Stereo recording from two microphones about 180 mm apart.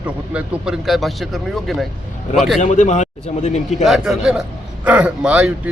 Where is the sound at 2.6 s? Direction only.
45° left (ahead or behind).